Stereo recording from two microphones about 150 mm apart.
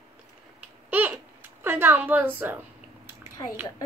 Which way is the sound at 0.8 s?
10° right (ahead or behind).